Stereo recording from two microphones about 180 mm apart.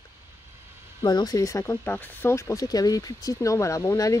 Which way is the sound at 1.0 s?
20° left (ahead or behind).